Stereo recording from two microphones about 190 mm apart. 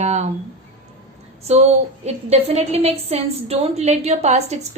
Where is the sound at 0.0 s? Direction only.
35° right (ahead or behind).